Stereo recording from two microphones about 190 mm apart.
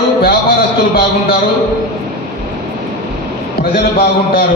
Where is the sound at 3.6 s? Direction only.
55° left (ahead or behind).